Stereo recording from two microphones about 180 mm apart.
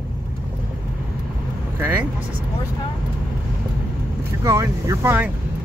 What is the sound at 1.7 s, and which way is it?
Speech, 10° right (ahead or behind).